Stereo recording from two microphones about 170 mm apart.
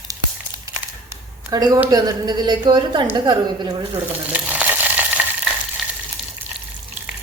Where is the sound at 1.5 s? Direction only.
20° right (ahead or behind).